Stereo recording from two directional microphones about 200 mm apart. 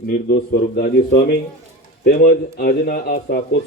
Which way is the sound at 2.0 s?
50° left (ahead or behind).